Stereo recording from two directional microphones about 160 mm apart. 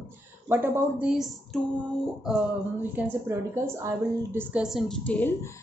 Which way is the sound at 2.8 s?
15° right (ahead or behind).